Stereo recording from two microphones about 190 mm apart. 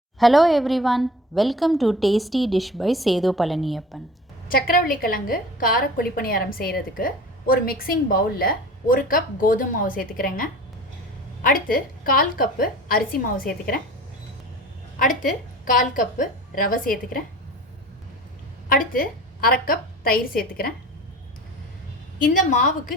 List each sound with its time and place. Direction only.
0.2 s a woman's voice: centre (ahead or behind)
4.4 s a woman's voice: 50° left (ahead or behind)
14.9 s a woman's voice: 45° left (ahead or behind)
18.7 s a woman's voice: 50° left (ahead or behind)
22.2 s a woman's voice: 45° left (ahead or behind)